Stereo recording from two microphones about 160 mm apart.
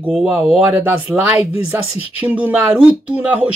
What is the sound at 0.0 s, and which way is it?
Speech, 5° right (ahead or behind).